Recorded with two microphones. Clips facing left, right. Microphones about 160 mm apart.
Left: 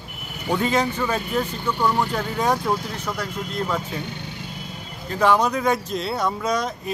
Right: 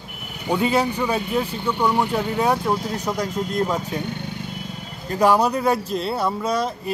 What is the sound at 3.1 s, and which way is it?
Speech, 20° right (ahead or behind).